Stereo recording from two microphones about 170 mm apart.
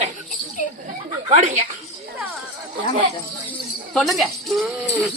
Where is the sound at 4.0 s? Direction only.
Centre (ahead or behind).